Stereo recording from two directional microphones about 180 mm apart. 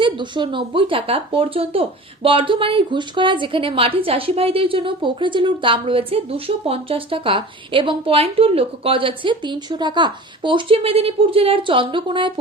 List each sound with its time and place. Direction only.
0.0 s speech: 25° right (ahead or behind)